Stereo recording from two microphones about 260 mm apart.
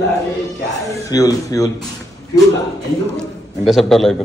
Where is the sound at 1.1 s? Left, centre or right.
Centre.